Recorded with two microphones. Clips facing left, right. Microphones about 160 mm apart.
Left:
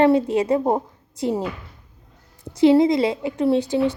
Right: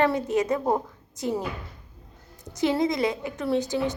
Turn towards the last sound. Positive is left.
turn(degrees=25)  # may be behind; listen again after turning